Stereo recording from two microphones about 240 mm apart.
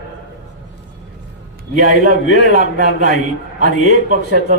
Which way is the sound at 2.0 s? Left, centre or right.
Right.